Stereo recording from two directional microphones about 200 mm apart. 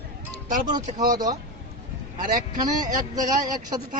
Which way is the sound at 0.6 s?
20° right (ahead or behind).